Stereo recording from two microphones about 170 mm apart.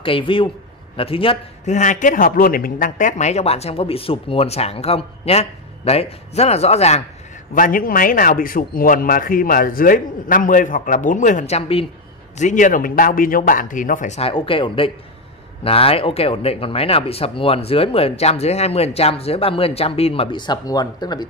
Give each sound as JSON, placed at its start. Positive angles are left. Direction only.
{"t": 0.0, "sound": "speech", "side_deg": 30}
{"t": 1.8, "sound": "speech", "side_deg": 50}
{"t": 7.5, "sound": "a man's voice", "side_deg": 55}
{"t": 12.4, "sound": "a man's voice", "side_deg": 45}